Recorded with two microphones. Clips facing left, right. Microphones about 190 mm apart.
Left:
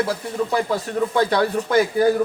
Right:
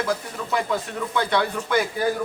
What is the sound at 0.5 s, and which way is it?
Speech, 35° left (ahead or behind).